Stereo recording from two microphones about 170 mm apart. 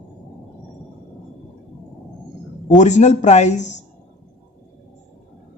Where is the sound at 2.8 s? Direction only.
45° left (ahead or behind).